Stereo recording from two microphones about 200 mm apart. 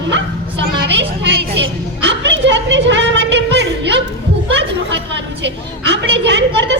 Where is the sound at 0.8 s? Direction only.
60° right (ahead or behind).